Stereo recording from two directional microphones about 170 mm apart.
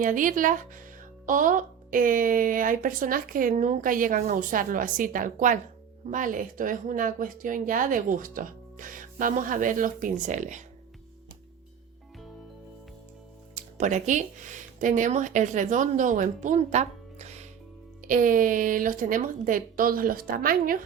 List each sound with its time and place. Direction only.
0.0 s speech: 50° right (ahead or behind)
13.6 s speech: 45° right (ahead or behind)
18.0 s speech: 55° right (ahead or behind)